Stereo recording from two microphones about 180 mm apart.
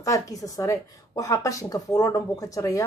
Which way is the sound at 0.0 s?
20° left (ahead or behind).